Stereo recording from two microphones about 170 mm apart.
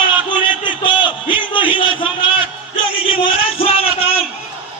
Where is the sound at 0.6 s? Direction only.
30° left (ahead or behind).